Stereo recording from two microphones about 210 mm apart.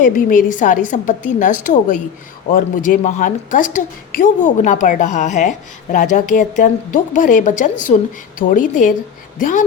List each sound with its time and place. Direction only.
0.0 s a woman's voice: 40° left (ahead or behind)